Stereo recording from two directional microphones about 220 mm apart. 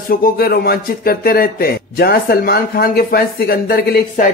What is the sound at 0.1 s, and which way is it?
Speech, 45° left (ahead or behind).